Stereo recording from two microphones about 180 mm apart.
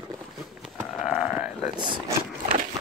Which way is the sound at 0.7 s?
5° right (ahead or behind).